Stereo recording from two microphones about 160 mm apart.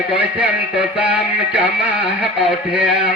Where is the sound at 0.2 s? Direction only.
10° right (ahead or behind).